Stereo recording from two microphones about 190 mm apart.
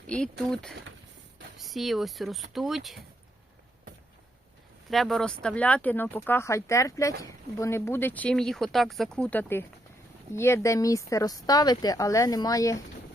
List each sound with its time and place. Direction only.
0.1 s speech: 5° left (ahead or behind)
4.9 s speech: centre (ahead or behind); by 12.8 s 15° left (ahead or behind)